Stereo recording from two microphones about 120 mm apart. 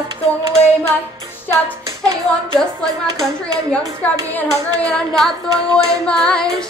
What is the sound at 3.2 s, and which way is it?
Speech, 5° left (ahead or behind).